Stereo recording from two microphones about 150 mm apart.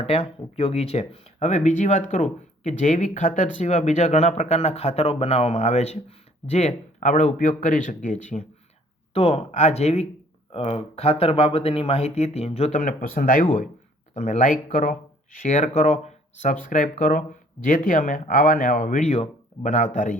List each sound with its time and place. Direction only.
0.0 s speech: 40° left (ahead or behind)
9.1 s speech: 45° left (ahead or behind)